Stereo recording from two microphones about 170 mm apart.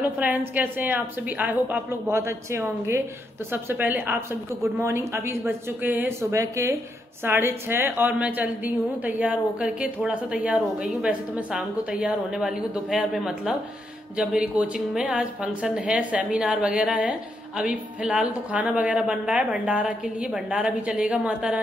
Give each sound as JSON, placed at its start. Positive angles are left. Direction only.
{"t": 0.2, "sound": "a woman's voice", "side_deg": -10}